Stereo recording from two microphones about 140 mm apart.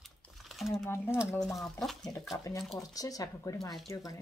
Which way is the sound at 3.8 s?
25° left (ahead or behind).